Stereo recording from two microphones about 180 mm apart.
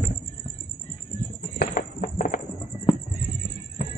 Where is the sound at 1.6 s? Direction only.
50° left (ahead or behind).